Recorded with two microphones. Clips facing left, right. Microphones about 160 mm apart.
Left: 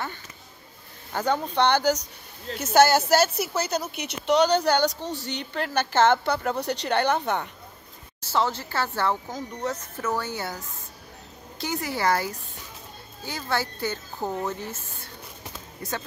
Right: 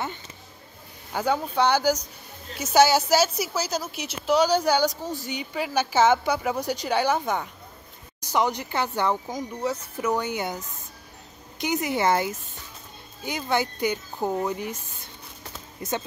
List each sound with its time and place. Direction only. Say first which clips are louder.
1.1 s a woman's voice: even; 10° right (ahead or behind)